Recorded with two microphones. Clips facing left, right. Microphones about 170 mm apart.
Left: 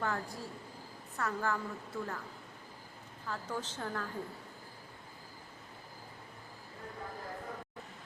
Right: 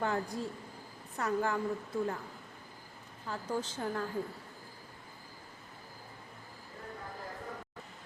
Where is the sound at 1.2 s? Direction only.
20° right (ahead or behind).